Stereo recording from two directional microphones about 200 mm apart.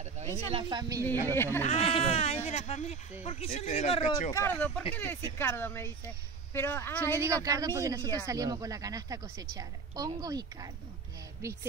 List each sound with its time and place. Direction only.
0.5 s speech: 25° right (ahead or behind)
1.0 s speech: 10° left (ahead or behind)
1.7 s speech: 30° left (ahead or behind)
4.3 s speech: 10° left (ahead or behind)
7.2 s a woman's voice: 15° right (ahead or behind)